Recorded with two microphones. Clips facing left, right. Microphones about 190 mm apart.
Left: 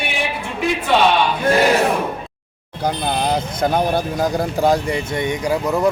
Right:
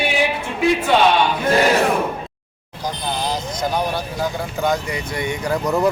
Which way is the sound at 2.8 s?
60° left (ahead or behind).